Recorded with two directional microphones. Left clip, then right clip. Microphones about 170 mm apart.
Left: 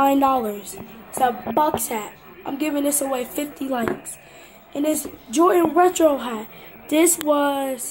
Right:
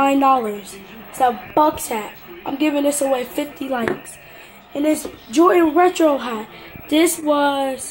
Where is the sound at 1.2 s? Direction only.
15° right (ahead or behind).